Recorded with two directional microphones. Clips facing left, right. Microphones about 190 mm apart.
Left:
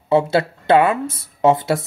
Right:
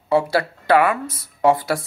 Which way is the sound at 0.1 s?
25° left (ahead or behind).